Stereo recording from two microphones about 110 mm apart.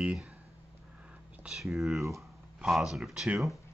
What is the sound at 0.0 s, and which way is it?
Speech, 10° right (ahead or behind).